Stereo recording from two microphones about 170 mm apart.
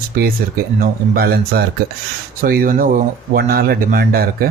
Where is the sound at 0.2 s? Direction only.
60° right (ahead or behind).